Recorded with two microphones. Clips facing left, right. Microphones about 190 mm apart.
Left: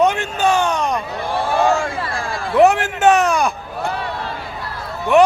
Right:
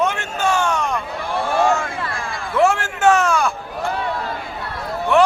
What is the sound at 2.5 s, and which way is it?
A man's voice, 20° left (ahead or behind).